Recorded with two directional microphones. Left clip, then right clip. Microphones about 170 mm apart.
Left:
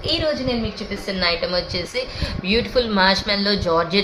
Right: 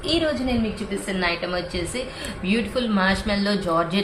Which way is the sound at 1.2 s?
30° left (ahead or behind).